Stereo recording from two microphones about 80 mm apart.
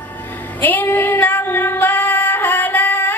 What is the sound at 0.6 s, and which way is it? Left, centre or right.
Female singing, left.